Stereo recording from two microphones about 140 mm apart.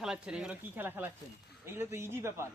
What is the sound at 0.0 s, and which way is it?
A man's voice, 5° right (ahead or behind).